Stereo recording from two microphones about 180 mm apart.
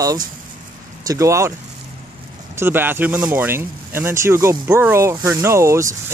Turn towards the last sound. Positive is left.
turn(degrees=-15)  # may be behind; listen again after turning